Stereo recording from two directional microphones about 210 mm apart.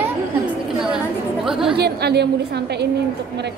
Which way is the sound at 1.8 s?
50° right (ahead or behind).